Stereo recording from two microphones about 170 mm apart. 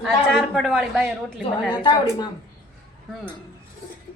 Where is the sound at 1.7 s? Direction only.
25° left (ahead or behind).